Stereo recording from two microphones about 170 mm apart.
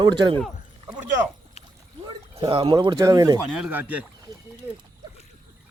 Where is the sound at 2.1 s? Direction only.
30° right (ahead or behind).